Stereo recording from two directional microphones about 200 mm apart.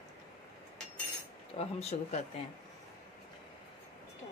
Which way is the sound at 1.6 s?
30° left (ahead or behind).